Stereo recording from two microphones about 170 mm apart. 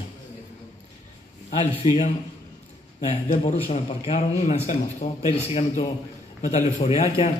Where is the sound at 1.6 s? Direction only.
35° left (ahead or behind).